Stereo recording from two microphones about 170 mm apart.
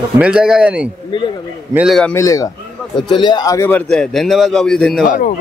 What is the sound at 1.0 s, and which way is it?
Speech, 30° left (ahead or behind).